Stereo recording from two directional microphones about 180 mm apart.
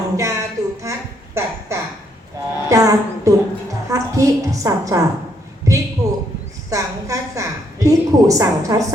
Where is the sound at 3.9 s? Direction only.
20° right (ahead or behind).